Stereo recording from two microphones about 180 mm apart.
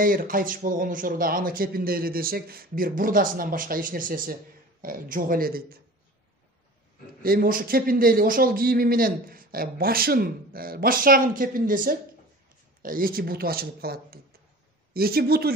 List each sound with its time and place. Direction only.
0.0 s a man's voice: 50° right (ahead or behind)
7.2 s a man's voice: 50° right (ahead or behind)